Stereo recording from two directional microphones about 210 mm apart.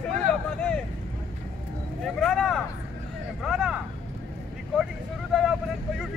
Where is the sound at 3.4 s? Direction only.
Centre (ahead or behind).